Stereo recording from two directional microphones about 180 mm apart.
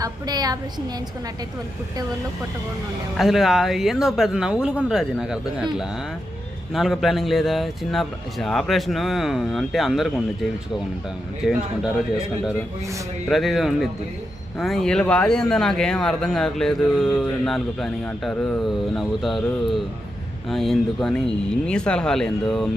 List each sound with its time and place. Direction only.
0.0 s a woman's voice: 20° right (ahead or behind)
3.2 s speech: centre (ahead or behind)
6.7 s speech: centre (ahead or behind)
13.2 s speech: centre (ahead or behind)